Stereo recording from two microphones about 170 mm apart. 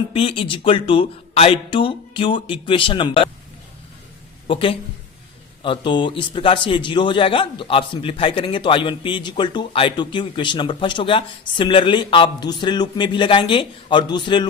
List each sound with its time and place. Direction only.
0.1 s speech: 35° left (ahead or behind)
4.4 s a man's voice: 30° left (ahead or behind)